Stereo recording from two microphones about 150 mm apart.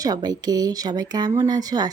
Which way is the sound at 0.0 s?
25° right (ahead or behind).